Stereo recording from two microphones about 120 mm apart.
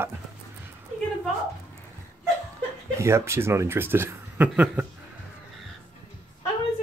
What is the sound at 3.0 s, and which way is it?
Speech, 25° right (ahead or behind).